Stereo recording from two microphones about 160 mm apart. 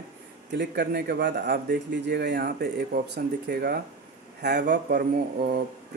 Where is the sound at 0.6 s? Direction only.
90° right.